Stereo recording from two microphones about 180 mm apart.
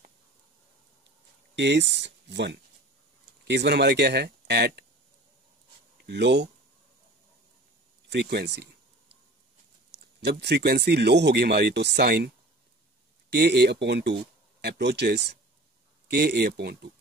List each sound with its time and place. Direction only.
1.5 s speech: 75° right (ahead or behind)
6.0 s speech: 70° right (ahead or behind)
8.1 s speech: 65° right (ahead or behind)
9.8 s speech: 70° right (ahead or behind)
13.3 s speech: 65° right (ahead or behind)